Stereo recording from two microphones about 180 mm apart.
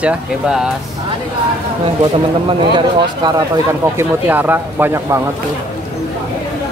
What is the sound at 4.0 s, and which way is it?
Speech, 10° right (ahead or behind).